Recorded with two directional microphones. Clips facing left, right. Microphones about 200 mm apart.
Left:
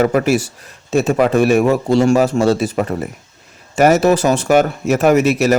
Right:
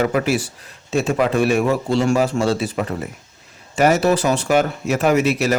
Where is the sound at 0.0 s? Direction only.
45° left (ahead or behind).